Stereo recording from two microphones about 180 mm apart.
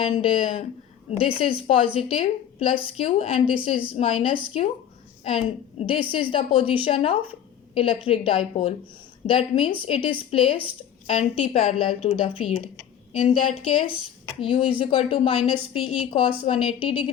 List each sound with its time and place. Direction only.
0.0 s a woman's voice: 30° left (ahead or behind)